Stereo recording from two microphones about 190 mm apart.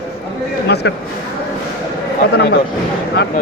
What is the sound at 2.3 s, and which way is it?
Speech, 60° left (ahead or behind).